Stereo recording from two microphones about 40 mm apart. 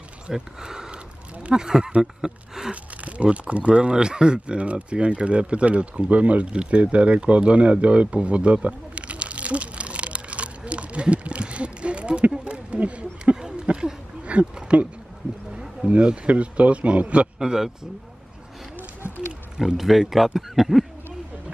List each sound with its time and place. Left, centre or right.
0.3 s speech: centre
2.7 s a man's voice: right
6.5 s a sound: right
14.2 s speech: right
15.9 s a man's voice: right
17.4 s a man's voice: centre
19.6 s speech: centre